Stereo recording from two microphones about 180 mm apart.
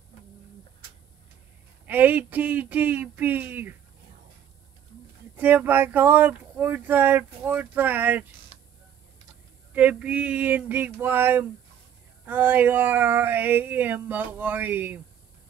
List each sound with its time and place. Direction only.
1.9 s speech: 10° right (ahead or behind)
5.3 s speech: 10° right (ahead or behind)
8.5 s a sound: 35° left (ahead or behind)
9.8 s speech: 5° right (ahead or behind)